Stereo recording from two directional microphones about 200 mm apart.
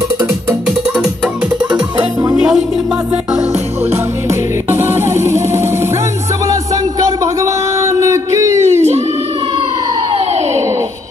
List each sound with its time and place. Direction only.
0.2 s music: 10° right (ahead or behind)
1.7 s music: 20° right (ahead or behind)
2.3 s music: 5° right (ahead or behind)
3.9 s music: 10° right (ahead or behind)
6.4 s a sound: 15° right (ahead or behind)
10.1 s a sound: 30° right (ahead or behind)